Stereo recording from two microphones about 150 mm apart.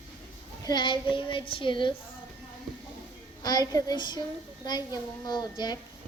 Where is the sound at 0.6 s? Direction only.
30° left (ahead or behind).